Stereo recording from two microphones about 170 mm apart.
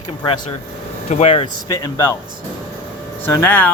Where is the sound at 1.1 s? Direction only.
35° left (ahead or behind).